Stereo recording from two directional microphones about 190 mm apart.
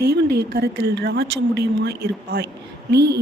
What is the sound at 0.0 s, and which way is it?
A woman's voice, 55° right (ahead or behind).